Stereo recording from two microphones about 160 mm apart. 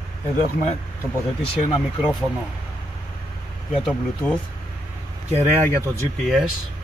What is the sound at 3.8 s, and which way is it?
Speech, 5° left (ahead or behind).